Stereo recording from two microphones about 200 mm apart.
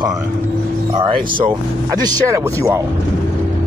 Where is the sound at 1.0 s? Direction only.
20° right (ahead or behind).